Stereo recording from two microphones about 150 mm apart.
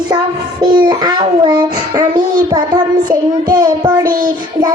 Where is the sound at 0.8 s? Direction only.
30° right (ahead or behind).